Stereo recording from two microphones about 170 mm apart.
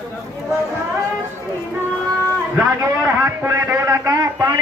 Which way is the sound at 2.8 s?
15° right (ahead or behind).